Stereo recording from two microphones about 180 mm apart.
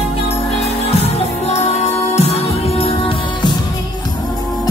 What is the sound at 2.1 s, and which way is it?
Music, 35° left (ahead or behind).